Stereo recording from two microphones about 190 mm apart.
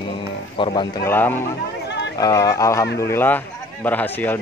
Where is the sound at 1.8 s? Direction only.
65° left (ahead or behind).